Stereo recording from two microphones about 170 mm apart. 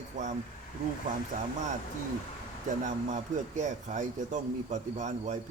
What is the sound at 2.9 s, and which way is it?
Speech, 45° right (ahead or behind).